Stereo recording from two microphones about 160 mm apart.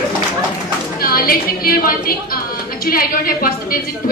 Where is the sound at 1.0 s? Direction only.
65° left (ahead or behind).